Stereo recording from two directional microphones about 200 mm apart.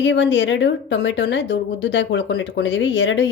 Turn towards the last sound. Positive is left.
turn(degrees=65)  # may be behind; listen again after turning